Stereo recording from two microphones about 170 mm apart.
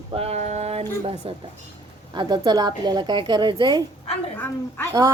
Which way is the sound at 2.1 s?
25° right (ahead or behind).